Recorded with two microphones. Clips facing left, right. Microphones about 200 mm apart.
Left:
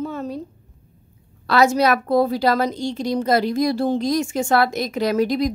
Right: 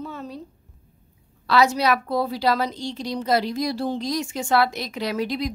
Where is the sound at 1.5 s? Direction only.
50° left (ahead or behind).